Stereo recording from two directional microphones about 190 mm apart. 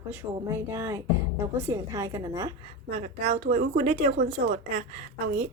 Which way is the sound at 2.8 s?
55° right (ahead or behind).